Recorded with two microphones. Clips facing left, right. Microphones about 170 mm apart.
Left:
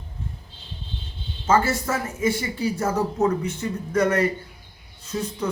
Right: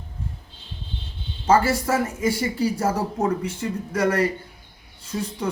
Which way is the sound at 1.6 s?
10° right (ahead or behind).